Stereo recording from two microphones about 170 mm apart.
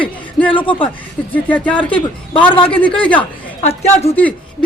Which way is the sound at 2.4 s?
30° left (ahead or behind).